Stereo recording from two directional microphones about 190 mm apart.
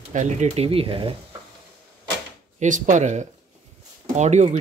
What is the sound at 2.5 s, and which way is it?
Speech, 40° right (ahead or behind).